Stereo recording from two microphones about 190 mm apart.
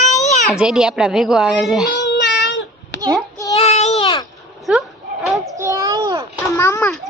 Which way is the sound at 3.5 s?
35° left (ahead or behind).